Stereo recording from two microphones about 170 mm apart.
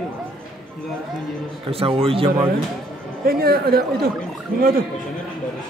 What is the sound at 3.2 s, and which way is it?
Speech, 65° right (ahead or behind).